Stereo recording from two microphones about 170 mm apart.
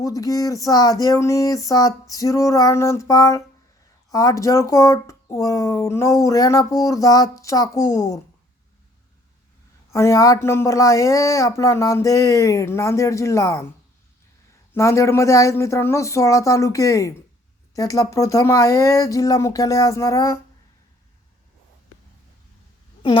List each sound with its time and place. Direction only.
0.0 s speech: 20° left (ahead or behind)
9.9 s speech: 15° left (ahead or behind)
14.7 s speech: 15° left (ahead or behind)